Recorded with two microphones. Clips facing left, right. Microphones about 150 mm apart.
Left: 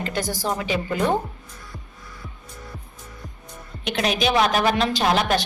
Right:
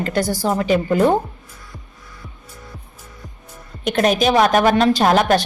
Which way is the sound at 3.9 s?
45° right (ahead or behind).